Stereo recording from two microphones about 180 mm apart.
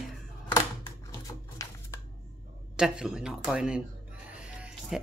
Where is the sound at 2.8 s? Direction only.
5° right (ahead or behind).